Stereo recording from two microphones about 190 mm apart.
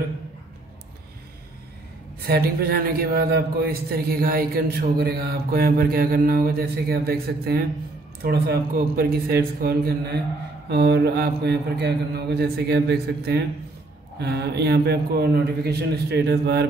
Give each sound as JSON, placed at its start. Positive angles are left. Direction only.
{"t": 2.2, "sound": "a man's voice", "side_deg": -55}